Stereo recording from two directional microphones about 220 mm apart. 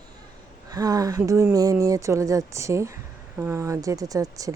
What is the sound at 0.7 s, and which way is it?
Speech, 15° right (ahead or behind).